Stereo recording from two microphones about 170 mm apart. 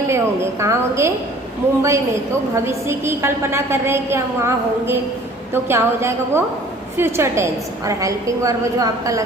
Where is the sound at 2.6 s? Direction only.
15° right (ahead or behind).